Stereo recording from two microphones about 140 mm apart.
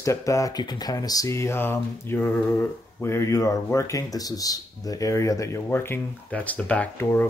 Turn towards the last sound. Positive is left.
turn(degrees=15)  # may be behind; listen again after turning